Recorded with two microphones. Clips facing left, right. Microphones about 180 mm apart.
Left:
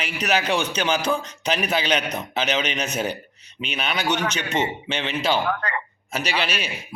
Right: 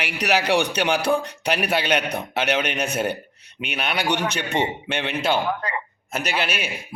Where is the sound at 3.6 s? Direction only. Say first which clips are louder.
Right 1 dB; 60° right (ahead or behind).